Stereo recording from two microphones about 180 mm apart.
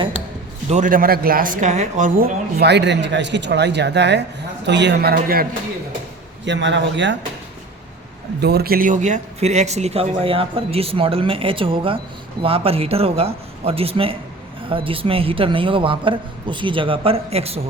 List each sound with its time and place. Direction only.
0.7 s speech: 45° right (ahead or behind)
6.4 s speech: 80° right
8.4 s a man's voice: 65° right (ahead or behind); by 17.6 s 35° right (ahead or behind)